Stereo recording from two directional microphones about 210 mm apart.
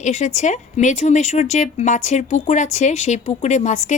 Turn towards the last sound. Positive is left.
turn(degrees=35)  # may be behind; listen again after turning